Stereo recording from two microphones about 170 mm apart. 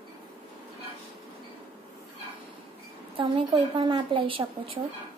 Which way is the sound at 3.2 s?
30° right (ahead or behind).